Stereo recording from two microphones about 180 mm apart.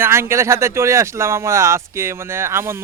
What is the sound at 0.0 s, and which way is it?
Speech, 15° right (ahead or behind).